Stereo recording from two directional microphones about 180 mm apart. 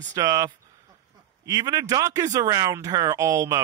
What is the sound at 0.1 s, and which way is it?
Speech, 20° right (ahead or behind).